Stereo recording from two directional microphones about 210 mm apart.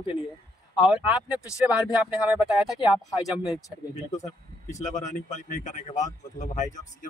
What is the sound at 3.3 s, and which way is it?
Speech, centre (ahead or behind).